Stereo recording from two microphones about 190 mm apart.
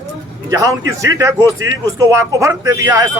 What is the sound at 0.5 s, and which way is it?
Speech, 15° right (ahead or behind).